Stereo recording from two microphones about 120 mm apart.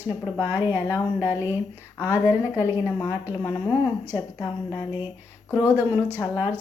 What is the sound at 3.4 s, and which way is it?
Speech, 35° left (ahead or behind).